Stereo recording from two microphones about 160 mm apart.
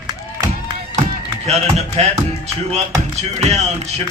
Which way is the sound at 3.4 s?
40° right (ahead or behind).